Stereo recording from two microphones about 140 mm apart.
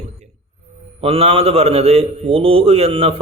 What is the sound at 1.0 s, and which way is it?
A man's voice, 45° right (ahead or behind).